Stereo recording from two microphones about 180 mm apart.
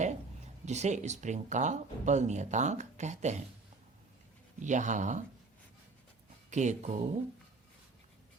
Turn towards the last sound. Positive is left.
turn(degrees=-40)  # may be behind; listen again after turning